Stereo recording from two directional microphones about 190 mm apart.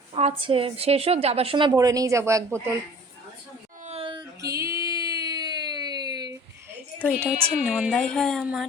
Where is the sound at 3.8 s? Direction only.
35° right (ahead or behind).